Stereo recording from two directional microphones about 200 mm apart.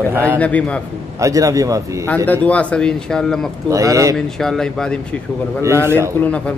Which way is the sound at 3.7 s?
15° right (ahead or behind).